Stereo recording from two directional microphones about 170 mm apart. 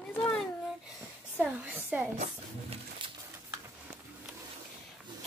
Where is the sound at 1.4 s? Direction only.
10° right (ahead or behind).